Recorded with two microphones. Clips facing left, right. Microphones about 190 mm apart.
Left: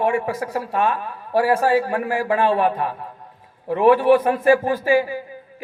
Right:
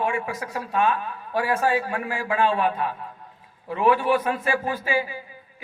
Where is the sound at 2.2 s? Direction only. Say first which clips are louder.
Left 3 dB; 50° left (ahead or behind).